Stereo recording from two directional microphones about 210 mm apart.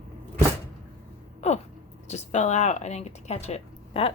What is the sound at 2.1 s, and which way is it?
Speech, 35° left (ahead or behind).